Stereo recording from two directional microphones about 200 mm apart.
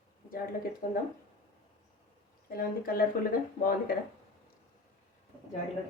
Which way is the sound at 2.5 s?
45° left (ahead or behind).